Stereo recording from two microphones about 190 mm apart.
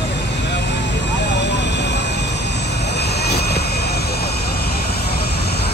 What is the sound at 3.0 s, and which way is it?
Vehicle, 60° left (ahead or behind).